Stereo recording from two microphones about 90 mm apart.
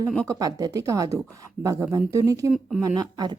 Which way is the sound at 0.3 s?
40° right (ahead or behind).